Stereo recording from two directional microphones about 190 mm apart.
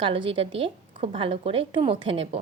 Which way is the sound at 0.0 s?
30° right (ahead or behind).